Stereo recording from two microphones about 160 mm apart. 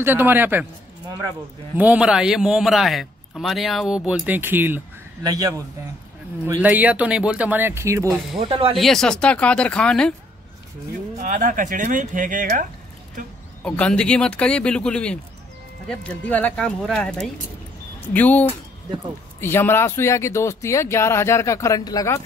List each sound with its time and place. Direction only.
0.0 s speech: 15° right (ahead or behind)
1.8 s a man's voice: 5° right (ahead or behind)
5.2 s speech: 25° right (ahead or behind)
6.4 s speech: 10° right (ahead or behind)
8.4 s speech: 35° right (ahead or behind)
8.7 s a man's voice: centre (ahead or behind)
11.1 s speech: 55° right (ahead or behind)
13.7 s speech: 5° left (ahead or behind)
19.4 s speech: 15° left (ahead or behind)